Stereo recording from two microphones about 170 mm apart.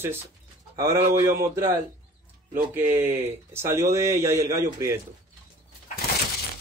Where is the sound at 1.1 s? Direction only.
15° right (ahead or behind).